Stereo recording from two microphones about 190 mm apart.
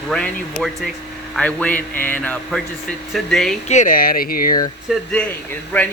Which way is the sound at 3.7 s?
40° left (ahead or behind).